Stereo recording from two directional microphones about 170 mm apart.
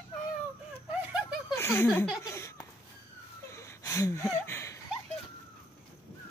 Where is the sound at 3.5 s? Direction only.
15° left (ahead or behind).